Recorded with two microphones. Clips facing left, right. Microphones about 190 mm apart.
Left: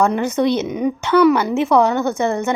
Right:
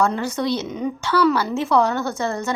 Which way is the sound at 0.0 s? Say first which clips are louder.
Left 5 dB; 20° left (ahead or behind).